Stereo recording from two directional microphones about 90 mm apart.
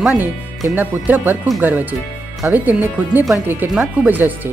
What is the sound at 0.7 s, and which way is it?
Speech, 20° right (ahead or behind).